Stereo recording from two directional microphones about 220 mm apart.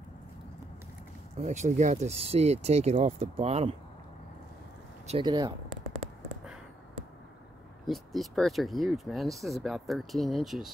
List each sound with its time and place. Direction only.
1.4 s speech: 30° right (ahead or behind)
5.0 s speech: 25° right (ahead or behind)
7.8 s speech: centre (ahead or behind)